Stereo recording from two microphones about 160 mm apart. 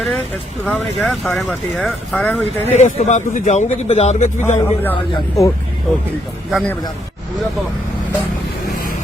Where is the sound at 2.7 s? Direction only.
45° left (ahead or behind).